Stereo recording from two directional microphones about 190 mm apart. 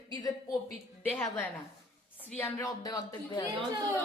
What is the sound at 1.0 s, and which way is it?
Speech, 10° left (ahead or behind).